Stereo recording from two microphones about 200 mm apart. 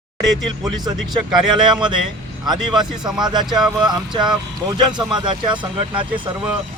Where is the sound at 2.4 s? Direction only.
20° right (ahead or behind).